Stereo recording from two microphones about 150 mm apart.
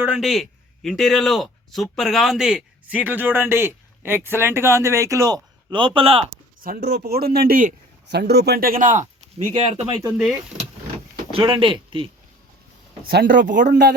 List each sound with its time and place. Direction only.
0.0 s speech: 5° right (ahead or behind); by 6.3 s 40° right (ahead or behind)
6.6 s a man's voice: 80° right; by 7.8 s 65° right (ahead or behind)
8.2 s speech: 90° right; by 9.0 s 60° right (ahead or behind)
9.5 s speech: 45° right (ahead or behind)
11.3 s speech: 35° right (ahead or behind)
13.1 s a man's voice: 75° right (ahead or behind)